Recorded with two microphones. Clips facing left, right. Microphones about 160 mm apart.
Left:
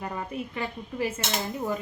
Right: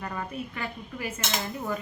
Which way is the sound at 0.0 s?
20° left (ahead or behind).